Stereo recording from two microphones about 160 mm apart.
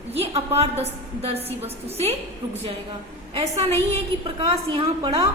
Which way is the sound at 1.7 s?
40° right (ahead or behind).